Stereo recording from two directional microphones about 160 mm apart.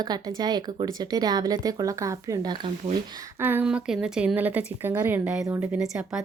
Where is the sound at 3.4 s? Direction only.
10° right (ahead or behind).